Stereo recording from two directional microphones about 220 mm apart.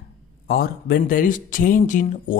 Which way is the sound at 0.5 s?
45° left (ahead or behind).